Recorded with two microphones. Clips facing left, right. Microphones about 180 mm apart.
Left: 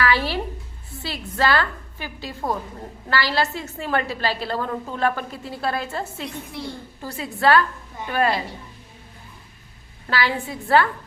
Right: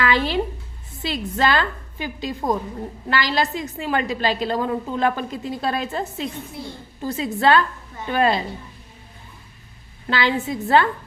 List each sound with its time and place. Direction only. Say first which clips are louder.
0.0 s a sound: right 1 dB; 20° right (ahead or behind)
0.9 s a woman's voice: right 2 dB; 20° right (ahead or behind)
10.1 s a woman's voice: right 3 dB; 20° right (ahead or behind)